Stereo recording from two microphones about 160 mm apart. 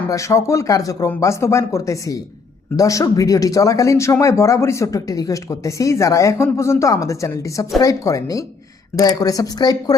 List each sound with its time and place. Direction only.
0.1 s speech: 20° left (ahead or behind)